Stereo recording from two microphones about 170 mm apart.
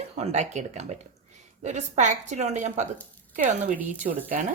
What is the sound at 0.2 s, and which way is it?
A woman's voice, 40° right (ahead or behind).